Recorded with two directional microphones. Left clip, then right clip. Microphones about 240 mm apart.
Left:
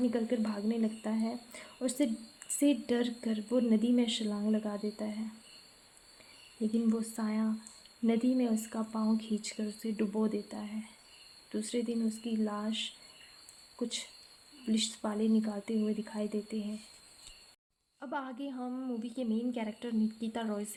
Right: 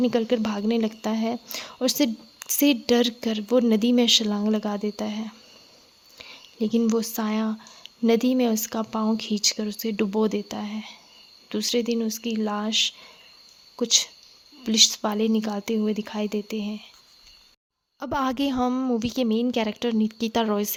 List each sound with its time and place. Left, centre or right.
0.0 s a woman's voice: right
6.6 s a woman's voice: right
18.0 s a woman's voice: right